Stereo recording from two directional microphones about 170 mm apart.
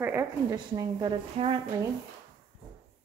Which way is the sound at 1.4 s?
35° right (ahead or behind).